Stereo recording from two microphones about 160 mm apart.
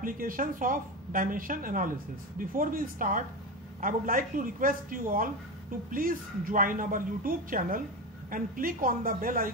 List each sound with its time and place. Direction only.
0.0 s speech: 60° right (ahead or behind)